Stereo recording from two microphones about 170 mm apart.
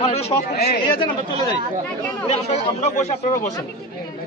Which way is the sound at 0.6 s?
65° left (ahead or behind).